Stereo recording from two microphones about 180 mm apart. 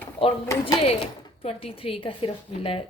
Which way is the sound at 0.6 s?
30° left (ahead or behind).